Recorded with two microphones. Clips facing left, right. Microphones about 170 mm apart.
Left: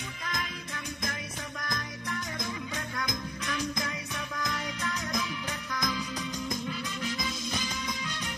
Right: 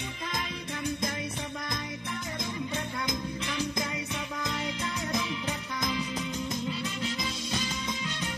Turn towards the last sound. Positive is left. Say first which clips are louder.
# right 1 dB
turn(degrees=-25)  # may be behind; listen again after turning